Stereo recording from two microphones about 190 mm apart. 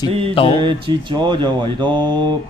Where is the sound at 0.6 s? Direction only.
25° right (ahead or behind).